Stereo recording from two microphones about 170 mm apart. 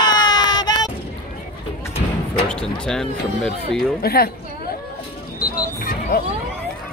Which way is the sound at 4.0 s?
65° left (ahead or behind).